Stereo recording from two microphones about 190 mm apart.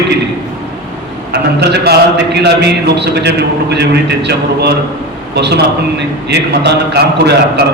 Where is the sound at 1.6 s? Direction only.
60° right (ahead or behind).